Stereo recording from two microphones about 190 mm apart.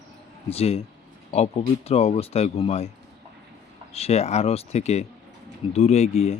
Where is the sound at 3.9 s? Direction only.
35° left (ahead or behind).